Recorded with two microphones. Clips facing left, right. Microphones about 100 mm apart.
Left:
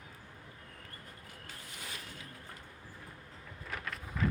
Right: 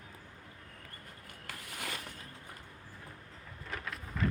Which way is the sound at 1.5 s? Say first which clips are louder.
Right 6 dB; 75° right (ahead or behind).